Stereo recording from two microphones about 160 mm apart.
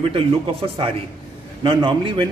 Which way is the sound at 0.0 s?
35° right (ahead or behind).